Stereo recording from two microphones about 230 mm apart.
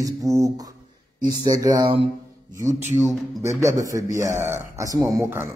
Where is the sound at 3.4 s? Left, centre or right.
Centre.